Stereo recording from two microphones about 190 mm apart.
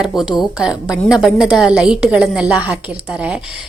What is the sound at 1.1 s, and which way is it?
A woman's voice, 5° right (ahead or behind).